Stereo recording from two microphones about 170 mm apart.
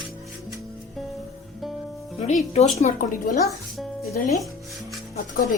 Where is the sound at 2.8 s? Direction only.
50° left (ahead or behind).